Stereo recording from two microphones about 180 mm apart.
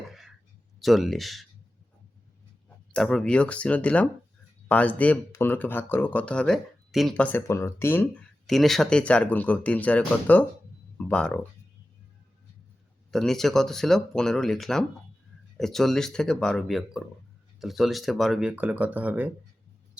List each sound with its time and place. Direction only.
0.8 s speech: centre (ahead or behind)
2.6 s speech: 5° left (ahead or behind)
13.1 s speech: centre (ahead or behind)